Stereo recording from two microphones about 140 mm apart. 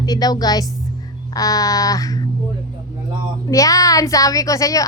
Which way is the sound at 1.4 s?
25° left (ahead or behind).